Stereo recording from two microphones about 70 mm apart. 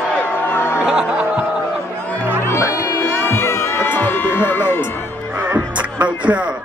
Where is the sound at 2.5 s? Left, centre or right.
Left.